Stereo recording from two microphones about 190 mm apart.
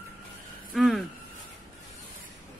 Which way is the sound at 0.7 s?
Centre (ahead or behind).